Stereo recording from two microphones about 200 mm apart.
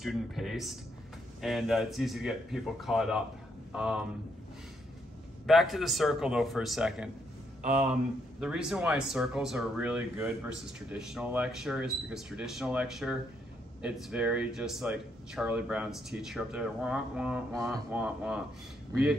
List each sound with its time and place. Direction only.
0.0 s speech: centre (ahead or behind)
5.5 s speech: centre (ahead or behind)
7.6 s speech: 40° right (ahead or behind)
8.4 s speech: 5° right (ahead or behind)